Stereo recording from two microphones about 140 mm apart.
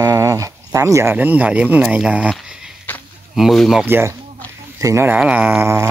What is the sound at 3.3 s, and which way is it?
Speech, centre (ahead or behind).